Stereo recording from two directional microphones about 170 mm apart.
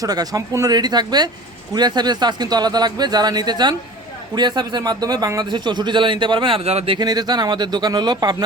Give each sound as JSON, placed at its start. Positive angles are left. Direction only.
{"t": 0.0, "sound": "a man's voice", "side_deg": -20}